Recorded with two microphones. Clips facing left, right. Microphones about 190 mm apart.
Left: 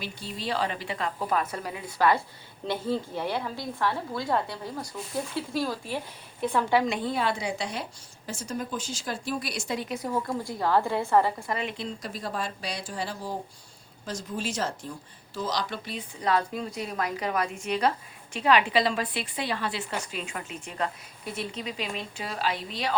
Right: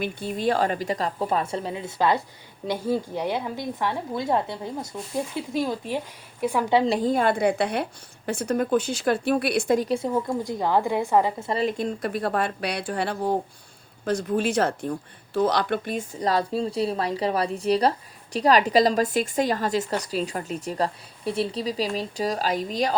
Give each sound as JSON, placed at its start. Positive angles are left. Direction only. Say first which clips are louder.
{"t": 0.0, "sound": "a woman's voice", "louder": "right 10 dB", "side_deg": -55}
{"t": 2.6, "sound": "a woman's voice", "louder": "right 3 dB", "side_deg": -10}
{"t": 6.7, "sound": "a woman's voice", "louder": "right 8 dB", "side_deg": -35}
{"t": 9.9, "sound": "a woman's voice", "louder": "right 5 dB", "side_deg": -25}
{"t": 11.6, "sound": "a woman's voice", "louder": "right 9 dB", "side_deg": -50}